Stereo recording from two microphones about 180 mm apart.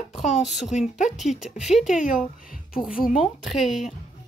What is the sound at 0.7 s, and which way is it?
Speech, 40° left (ahead or behind).